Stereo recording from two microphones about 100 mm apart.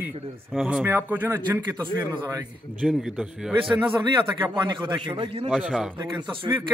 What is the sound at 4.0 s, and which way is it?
A man's voice, 50° right (ahead or behind).